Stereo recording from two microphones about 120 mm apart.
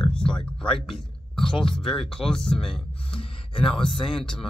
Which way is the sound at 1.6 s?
5° left (ahead or behind).